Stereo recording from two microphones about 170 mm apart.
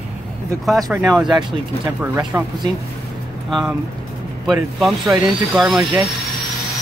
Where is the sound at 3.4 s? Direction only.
Centre (ahead or behind).